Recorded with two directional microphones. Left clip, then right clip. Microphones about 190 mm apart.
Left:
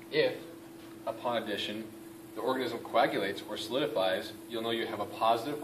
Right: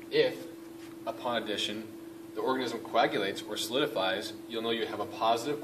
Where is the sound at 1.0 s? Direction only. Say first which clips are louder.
Even; 25° right (ahead or behind).